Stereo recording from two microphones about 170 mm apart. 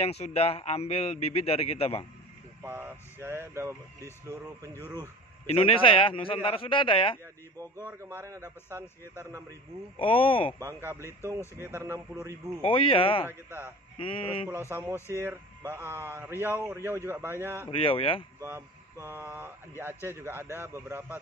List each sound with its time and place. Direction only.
0.0 s a man's voice: 40° left (ahead or behind)
2.6 s a man's voice: 10° right (ahead or behind)
5.5 s a man's voice: 35° left (ahead or behind)
7.8 s a man's voice: 15° right (ahead or behind)
9.9 s a man's voice: 30° left (ahead or behind)
10.6 s a man's voice: 15° right (ahead or behind)
12.6 s a man's voice: 30° left (ahead or behind)
13.3 s a man's voice: 10° right (ahead or behind)
13.9 s a man's voice: 30° left (ahead or behind)
14.7 s a man's voice: 15° right (ahead or behind)
17.6 s a man's voice: 30° left (ahead or behind)
18.4 s a man's voice: 15° right (ahead or behind)